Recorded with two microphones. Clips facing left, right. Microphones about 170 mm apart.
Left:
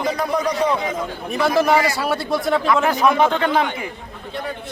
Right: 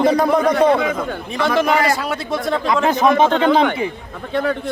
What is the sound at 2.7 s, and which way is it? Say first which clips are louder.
Speech: right 4 dB; 25° right (ahead or behind).